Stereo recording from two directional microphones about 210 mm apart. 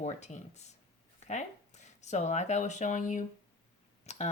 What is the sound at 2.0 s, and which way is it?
Speech, 35° left (ahead or behind).